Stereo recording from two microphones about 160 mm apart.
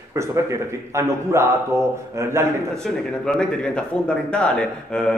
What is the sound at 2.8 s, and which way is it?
Speech, 5° left (ahead or behind).